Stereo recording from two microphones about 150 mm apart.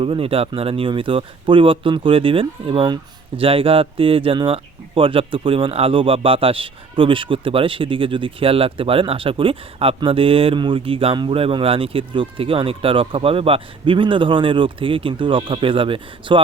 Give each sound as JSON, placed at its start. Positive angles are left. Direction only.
{"t": 0.0, "sound": "speech", "side_deg": -40}